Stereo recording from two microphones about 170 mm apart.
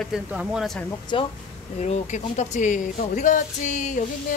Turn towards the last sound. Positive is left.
turn(degrees=45)  # may be behind; listen again after turning